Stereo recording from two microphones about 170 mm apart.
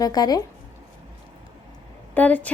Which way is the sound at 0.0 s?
20° left (ahead or behind).